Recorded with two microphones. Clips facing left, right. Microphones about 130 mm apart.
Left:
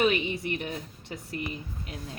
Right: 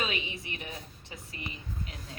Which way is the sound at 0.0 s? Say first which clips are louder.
Left 9 dB; 55° left (ahead or behind).